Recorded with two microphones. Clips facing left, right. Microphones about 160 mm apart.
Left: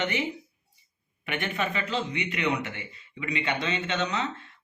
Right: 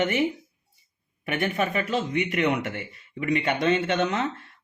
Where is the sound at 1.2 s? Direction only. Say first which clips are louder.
Right 4 dB; 45° right (ahead or behind).